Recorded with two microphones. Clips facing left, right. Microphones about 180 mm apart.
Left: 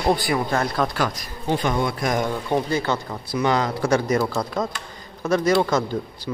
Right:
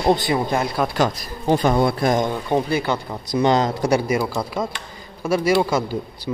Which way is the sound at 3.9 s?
10° right (ahead or behind).